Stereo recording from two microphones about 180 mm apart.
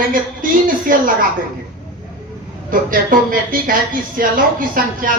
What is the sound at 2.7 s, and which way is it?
Speech, 50° right (ahead or behind).